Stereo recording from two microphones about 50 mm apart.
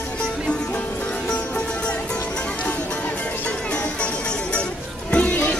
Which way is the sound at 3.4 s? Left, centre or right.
Left.